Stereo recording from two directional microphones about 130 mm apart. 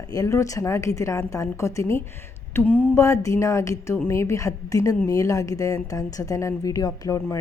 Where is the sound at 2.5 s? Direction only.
15° left (ahead or behind).